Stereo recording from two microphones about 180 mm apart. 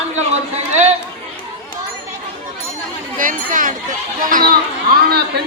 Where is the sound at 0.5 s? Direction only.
40° right (ahead or behind).